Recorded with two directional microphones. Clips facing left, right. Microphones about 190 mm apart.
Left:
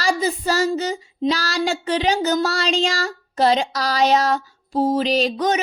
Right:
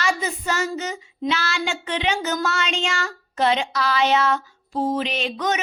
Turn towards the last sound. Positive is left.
turn(degrees=35)  # may be behind; listen again after turning